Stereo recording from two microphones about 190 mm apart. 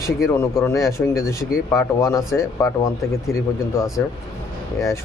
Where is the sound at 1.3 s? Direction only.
15° left (ahead or behind).